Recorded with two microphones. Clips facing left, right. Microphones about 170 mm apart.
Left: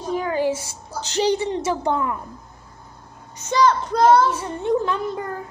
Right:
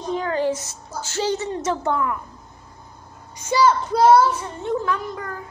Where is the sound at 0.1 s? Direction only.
10° left (ahead or behind).